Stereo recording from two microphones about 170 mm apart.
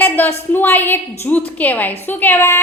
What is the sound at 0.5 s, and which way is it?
A woman's voice, 10° left (ahead or behind).